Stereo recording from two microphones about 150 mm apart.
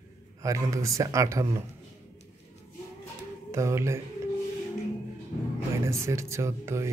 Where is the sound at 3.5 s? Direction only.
20° right (ahead or behind).